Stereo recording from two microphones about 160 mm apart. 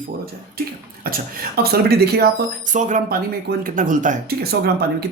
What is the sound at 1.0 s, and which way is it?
Speech, 65° right (ahead or behind).